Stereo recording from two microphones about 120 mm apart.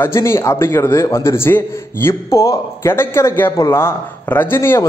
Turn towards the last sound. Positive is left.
turn(degrees=20)  # may be behind; listen again after turning